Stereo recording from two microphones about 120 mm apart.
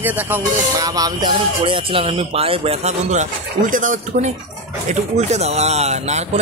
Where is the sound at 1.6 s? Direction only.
50° right (ahead or behind).